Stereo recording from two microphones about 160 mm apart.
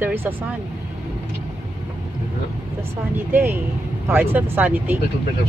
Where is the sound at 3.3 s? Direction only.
10° right (ahead or behind).